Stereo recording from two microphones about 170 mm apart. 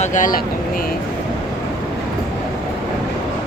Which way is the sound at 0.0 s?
50° left (ahead or behind).